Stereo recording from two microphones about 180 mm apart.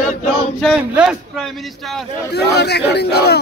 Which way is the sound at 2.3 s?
65° left (ahead or behind).